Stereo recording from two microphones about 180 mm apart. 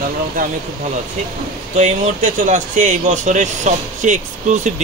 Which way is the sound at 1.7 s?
45° right (ahead or behind).